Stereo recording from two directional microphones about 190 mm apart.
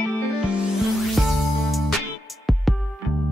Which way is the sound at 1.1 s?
Centre (ahead or behind).